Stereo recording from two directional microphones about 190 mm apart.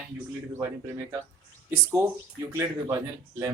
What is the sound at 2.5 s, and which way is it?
Speech, 15° right (ahead or behind).